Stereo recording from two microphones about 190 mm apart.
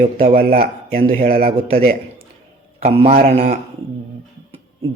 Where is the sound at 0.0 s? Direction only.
40° right (ahead or behind).